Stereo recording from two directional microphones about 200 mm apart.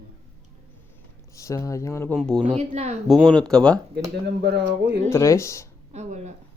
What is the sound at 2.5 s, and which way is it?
Speech, 35° right (ahead or behind).